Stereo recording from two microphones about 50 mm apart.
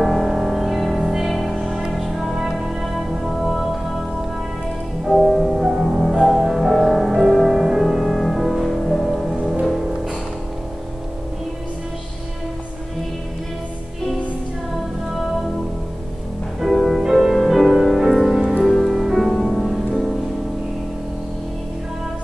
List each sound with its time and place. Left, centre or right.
0.0 s music: centre
5.0 s music: centre
16.6 s music: centre